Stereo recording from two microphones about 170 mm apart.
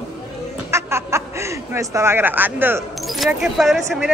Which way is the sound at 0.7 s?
15° right (ahead or behind).